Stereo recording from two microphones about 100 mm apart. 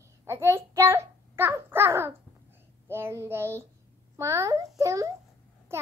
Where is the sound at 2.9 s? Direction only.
25° right (ahead or behind).